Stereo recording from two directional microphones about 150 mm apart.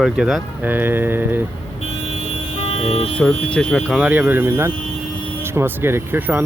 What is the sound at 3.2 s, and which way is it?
Speech, 5° left (ahead or behind).